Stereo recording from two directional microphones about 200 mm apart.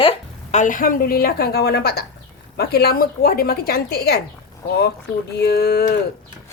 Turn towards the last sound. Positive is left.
turn(degrees=50)  # may be behind; listen again after turning